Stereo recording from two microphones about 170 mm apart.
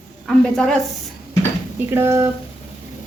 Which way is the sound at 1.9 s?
15° right (ahead or behind).